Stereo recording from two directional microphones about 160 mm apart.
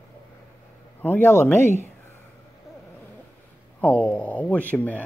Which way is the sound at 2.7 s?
Centre (ahead or behind).